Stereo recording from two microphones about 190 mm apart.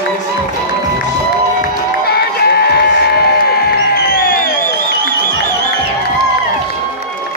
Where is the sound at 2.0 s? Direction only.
55° left (ahead or behind).